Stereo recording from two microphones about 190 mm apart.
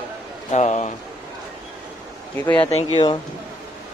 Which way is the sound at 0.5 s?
35° left (ahead or behind).